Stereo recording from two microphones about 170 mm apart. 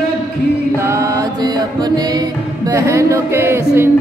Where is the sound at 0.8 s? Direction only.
15° right (ahead or behind).